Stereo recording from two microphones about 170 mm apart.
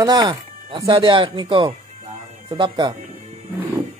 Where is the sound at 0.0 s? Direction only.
25° right (ahead or behind).